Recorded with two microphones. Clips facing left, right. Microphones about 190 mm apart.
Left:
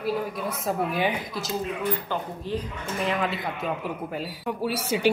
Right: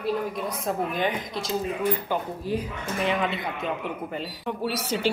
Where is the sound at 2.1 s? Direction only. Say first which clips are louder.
Right 2 dB; 10° right (ahead or behind).